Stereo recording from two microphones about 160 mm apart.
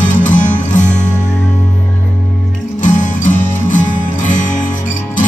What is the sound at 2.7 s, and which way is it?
Music, 50° left (ahead or behind).